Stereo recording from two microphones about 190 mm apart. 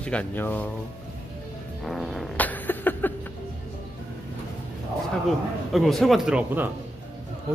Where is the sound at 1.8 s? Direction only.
Centre (ahead or behind).